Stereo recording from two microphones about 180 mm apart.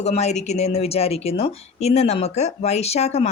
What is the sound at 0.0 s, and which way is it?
Speech, 35° left (ahead or behind).